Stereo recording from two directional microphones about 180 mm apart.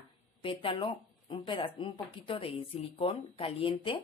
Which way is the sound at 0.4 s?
30° left (ahead or behind).